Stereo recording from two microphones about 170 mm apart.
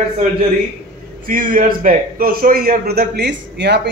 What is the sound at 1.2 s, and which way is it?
A man's voice, 55° right (ahead or behind).